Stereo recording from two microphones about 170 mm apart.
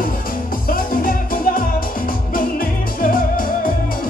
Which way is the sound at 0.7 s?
55° left (ahead or behind).